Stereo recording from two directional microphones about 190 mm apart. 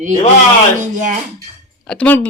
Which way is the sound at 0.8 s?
40° right (ahead or behind).